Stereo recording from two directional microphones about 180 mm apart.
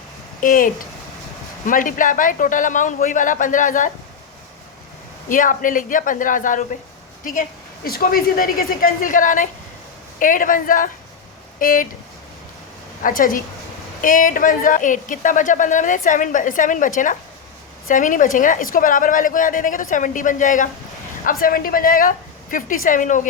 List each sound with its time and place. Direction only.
0.4 s speech: 50° left (ahead or behind)
5.3 s speech: 45° left (ahead or behind)
7.9 s speech: 55° left (ahead or behind)
13.0 s speech: 50° left (ahead or behind)